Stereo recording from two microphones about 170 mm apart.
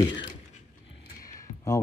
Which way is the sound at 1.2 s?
20° left (ahead or behind).